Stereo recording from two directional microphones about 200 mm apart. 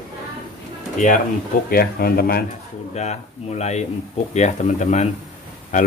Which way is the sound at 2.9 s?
35° left (ahead or behind).